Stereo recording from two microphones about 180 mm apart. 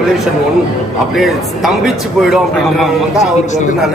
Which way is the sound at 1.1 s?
Centre (ahead or behind).